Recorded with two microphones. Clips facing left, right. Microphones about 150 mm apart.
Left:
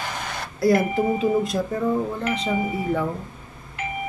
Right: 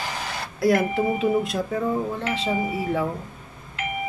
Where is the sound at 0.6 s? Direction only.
Centre (ahead or behind).